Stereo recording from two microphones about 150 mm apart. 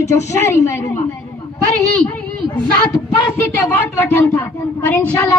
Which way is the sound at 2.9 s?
15° left (ahead or behind).